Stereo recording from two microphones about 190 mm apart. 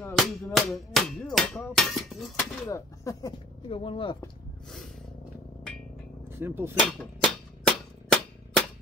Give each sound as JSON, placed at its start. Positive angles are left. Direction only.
{"t": 0.1, "sound": "hammer", "side_deg": 0}
{"t": 2.7, "sound": "speech", "side_deg": 20}
{"t": 3.6, "sound": "speech", "side_deg": 30}
{"t": 6.4, "sound": "speech", "side_deg": -10}
{"t": 6.9, "sound": "a sound", "side_deg": 5}